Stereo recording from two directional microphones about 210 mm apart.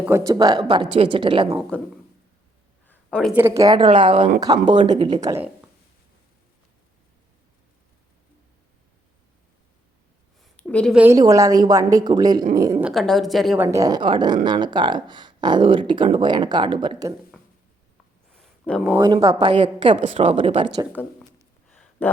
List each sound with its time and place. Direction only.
0.0 s a woman's voice: 15° right (ahead or behind)
1.7 s a woman's voice: 5° left (ahead or behind)
2.8 s a sound: 5° left (ahead or behind)
3.3 s a woman's voice: 10° right (ahead or behind)
4.7 s a woman's voice: 35° right (ahead or behind)
5.0 s a woman's voice: 20° right (ahead or behind)
10.6 s a sound: 5° left (ahead or behind)
10.9 s a woman's voice: 10° right (ahead or behind)
12.8 s a woman's voice: centre (ahead or behind)
13.7 s speech: 15° right (ahead or behind)
18.3 s a sound: 5° left (ahead or behind)
18.9 s speech: 20° right (ahead or behind)
21.0 s speech: 10° left (ahead or behind)
21.7 s a sound: 10° left (ahead or behind)